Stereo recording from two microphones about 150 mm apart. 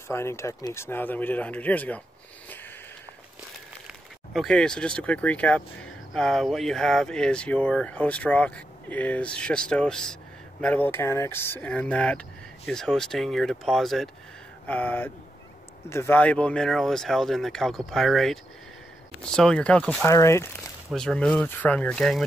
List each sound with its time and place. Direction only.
0.1 s speech: 15° left (ahead or behind)
4.3 s speech: 5° left (ahead or behind)
14.7 s speech: 10° left (ahead or behind)
20.1 s speech: 20° left (ahead or behind)
20.9 s speech: 5° left (ahead or behind)